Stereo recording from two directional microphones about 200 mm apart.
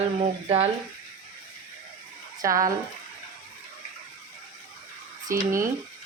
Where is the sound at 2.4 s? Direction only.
15° right (ahead or behind).